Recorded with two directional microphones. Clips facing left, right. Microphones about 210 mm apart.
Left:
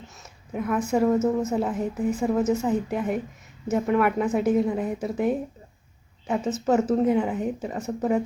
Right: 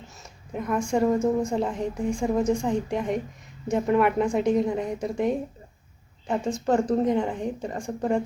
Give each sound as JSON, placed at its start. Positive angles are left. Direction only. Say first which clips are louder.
{"t": 0.2, "sound": "a woman's voice", "louder": "left 3 dB", "side_deg": 5}